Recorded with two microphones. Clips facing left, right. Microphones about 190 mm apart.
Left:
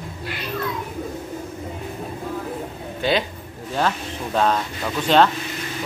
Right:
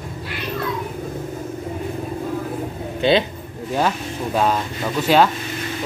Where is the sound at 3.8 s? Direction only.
10° right (ahead or behind).